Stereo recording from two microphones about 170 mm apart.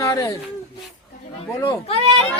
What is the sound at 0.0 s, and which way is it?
Speech, 20° left (ahead or behind).